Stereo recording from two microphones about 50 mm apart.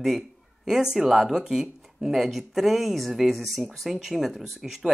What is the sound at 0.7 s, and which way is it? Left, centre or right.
Speech, centre.